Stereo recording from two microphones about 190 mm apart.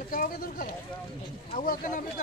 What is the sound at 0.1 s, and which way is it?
Speech, 50° left (ahead or behind).